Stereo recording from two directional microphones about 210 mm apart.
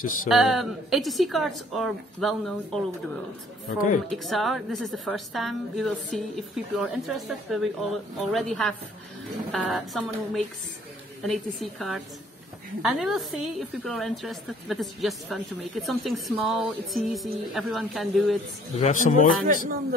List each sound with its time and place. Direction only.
0.3 s a woman's voice: centre (ahead or behind)
4.1 s a woman's voice: centre (ahead or behind)
18.8 s a man's voice: 35° left (ahead or behind)
19.4 s a man's voice: 40° right (ahead or behind)